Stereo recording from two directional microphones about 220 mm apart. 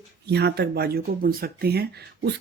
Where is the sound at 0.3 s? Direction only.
50° right (ahead or behind).